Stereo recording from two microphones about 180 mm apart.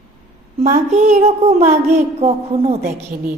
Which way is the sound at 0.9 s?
40° right (ahead or behind).